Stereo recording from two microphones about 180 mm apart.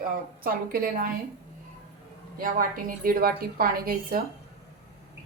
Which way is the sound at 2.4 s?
50° right (ahead or behind).